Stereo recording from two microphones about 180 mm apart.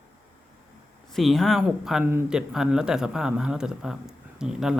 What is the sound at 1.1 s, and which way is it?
Speech, centre (ahead or behind).